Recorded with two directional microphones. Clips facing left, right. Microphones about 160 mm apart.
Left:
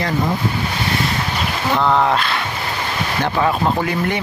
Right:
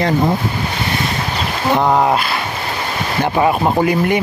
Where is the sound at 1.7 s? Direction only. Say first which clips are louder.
Right 2 dB; 15° right (ahead or behind).